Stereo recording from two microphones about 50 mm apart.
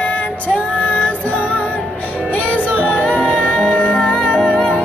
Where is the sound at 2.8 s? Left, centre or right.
Left.